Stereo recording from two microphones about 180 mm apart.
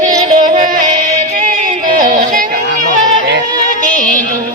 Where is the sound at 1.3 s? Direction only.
50° right (ahead or behind).